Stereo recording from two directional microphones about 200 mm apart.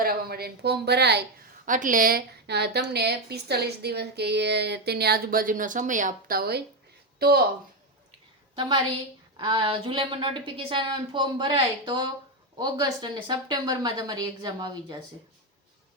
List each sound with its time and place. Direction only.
0.0 s a woman's voice: 50° right (ahead or behind)
1.6 s a woman's voice: 40° right (ahead or behind)
8.5 s a woman's voice: 25° right (ahead or behind)